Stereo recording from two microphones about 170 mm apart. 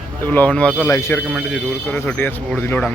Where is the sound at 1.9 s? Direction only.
10° left (ahead or behind).